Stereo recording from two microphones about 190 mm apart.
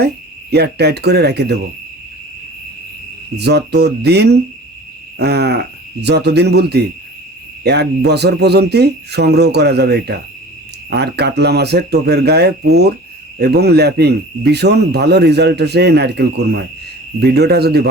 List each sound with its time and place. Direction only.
0.5 s speech: 60° right (ahead or behind)
3.3 s speech: 60° right (ahead or behind)